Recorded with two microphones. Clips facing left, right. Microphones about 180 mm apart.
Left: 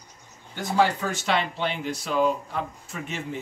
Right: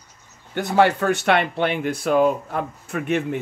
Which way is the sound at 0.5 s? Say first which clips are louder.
Right 5 dB; 65° right (ahead or behind).